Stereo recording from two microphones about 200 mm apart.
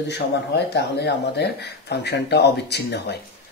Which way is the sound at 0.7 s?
55° left (ahead or behind).